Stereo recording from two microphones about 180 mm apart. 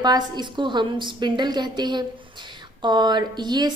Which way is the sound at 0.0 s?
25° right (ahead or behind).